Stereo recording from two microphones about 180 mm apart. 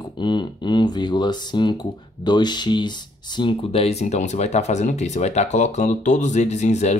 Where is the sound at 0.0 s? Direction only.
25° left (ahead or behind).